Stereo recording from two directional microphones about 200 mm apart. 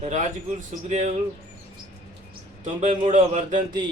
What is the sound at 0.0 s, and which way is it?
Speech, 35° right (ahead or behind).